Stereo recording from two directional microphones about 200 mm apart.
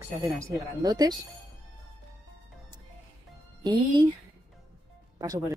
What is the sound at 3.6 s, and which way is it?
Speech, 25° right (ahead or behind).